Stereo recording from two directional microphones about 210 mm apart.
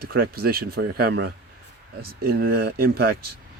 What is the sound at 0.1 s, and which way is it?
Speech, 45° right (ahead or behind).